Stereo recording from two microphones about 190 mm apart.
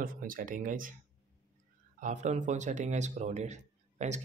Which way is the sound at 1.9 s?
40° right (ahead or behind).